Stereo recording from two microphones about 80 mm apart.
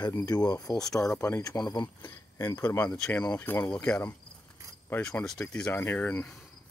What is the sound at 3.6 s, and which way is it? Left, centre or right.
Speech, centre.